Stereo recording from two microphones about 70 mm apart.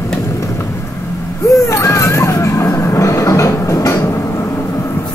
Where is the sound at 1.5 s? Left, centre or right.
Left.